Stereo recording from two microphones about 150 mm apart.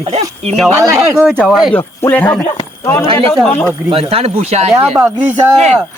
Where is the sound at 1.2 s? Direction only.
5° right (ahead or behind).